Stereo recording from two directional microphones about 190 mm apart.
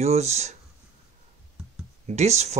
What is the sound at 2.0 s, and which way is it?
Speech, 35° right (ahead or behind).